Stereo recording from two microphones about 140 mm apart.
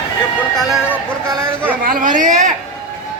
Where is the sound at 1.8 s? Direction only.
80° right; by 2.5 s 65° right (ahead or behind).